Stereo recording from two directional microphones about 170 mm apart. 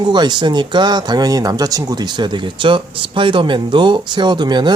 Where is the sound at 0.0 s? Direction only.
25° right (ahead or behind).